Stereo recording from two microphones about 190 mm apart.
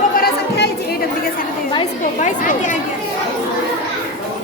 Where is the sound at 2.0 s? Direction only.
40° left (ahead or behind).